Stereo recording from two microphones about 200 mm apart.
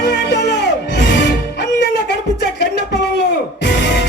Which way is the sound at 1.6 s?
60° left (ahead or behind).